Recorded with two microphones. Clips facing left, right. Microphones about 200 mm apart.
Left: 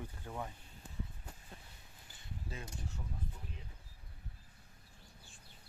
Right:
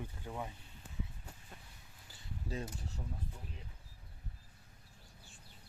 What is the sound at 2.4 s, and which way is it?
Speech, 35° right (ahead or behind).